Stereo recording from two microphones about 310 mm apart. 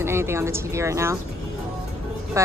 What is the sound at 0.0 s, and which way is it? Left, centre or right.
Speech, centre.